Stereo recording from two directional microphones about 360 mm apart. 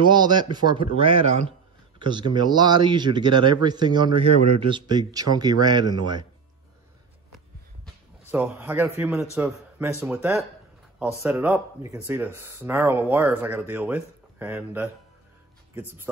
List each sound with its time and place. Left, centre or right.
0.0 s speech: centre
7.3 s a sound: centre
9.4 s a man's voice: centre